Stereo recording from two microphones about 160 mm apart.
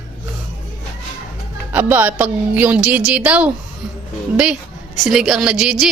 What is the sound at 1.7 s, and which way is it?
A woman's voice, 10° right (ahead or behind).